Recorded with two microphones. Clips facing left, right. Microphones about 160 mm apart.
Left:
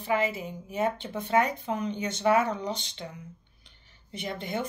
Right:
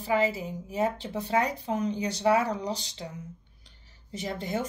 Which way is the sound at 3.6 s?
40° right (ahead or behind).